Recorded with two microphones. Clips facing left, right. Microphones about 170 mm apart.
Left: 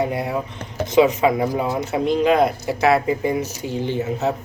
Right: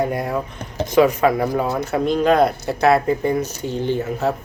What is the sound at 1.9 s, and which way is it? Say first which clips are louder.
Speech: right 1 dB; 50° right (ahead or behind).